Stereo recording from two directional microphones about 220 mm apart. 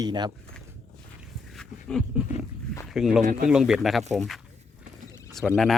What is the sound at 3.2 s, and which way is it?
Speech, 40° right (ahead or behind).